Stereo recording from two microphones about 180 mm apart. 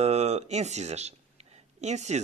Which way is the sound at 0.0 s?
35° right (ahead or behind).